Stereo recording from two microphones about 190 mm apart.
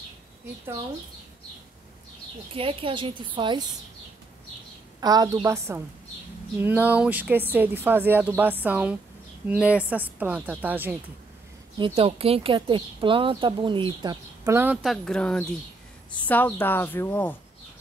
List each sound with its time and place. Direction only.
2.5 s a woman's voice: 30° right (ahead or behind)
5.0 s a woman's voice: 20° right (ahead or behind)
11.8 s a woman's voice: 30° right (ahead or behind); by 17.4 s 10° left (ahead or behind)